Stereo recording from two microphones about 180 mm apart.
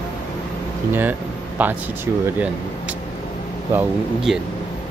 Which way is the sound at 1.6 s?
10° right (ahead or behind).